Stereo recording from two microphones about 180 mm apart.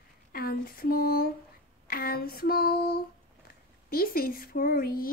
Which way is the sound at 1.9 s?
55° left (ahead or behind).